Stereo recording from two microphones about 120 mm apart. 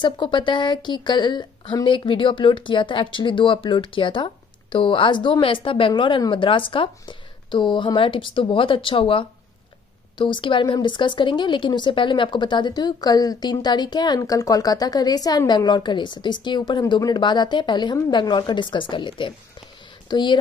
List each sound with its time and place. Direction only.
0.0 s speech: 40° left (ahead or behind)